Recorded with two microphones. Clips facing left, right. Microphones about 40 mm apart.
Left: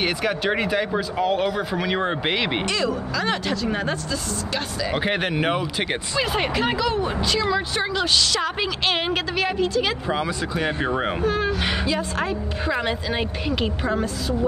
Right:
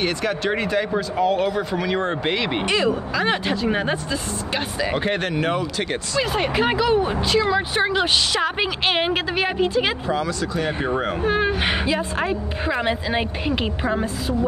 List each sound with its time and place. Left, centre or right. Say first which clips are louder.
0.0 s speech: even; centre
2.7 s speech: right 3 dB; right
4.9 s speech: left 2 dB; centre
6.2 s speech: even; centre
6.5 s speech: right 4 dB; centre
10.0 s speech: right 1 dB; centre
11.2 s a woman's voice: right 4 dB; right